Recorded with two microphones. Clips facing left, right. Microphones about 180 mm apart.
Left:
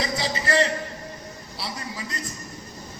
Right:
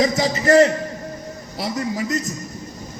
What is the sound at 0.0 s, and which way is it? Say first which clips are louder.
A man's voice: right 9 dB; 45° right (ahead or behind).